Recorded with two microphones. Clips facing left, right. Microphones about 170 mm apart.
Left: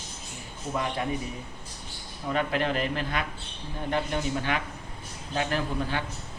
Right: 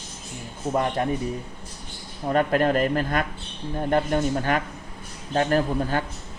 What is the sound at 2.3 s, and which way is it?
Speech, 45° right (ahead or behind).